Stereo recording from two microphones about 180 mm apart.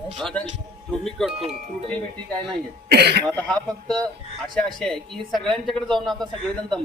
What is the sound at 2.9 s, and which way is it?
Speech, 65° right (ahead or behind).